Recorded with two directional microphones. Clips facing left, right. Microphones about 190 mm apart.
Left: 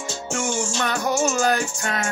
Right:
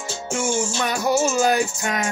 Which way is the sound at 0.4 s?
10° right (ahead or behind).